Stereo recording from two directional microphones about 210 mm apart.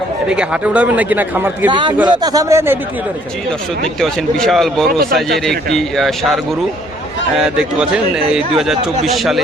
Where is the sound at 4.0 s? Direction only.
Centre (ahead or behind).